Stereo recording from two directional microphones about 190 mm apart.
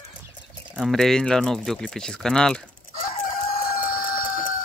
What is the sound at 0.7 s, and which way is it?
Speech, centre (ahead or behind).